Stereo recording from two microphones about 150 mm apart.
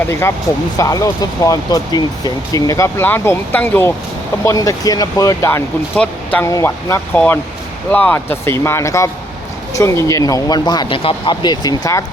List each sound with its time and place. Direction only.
0.1 s speech: 15° left (ahead or behind)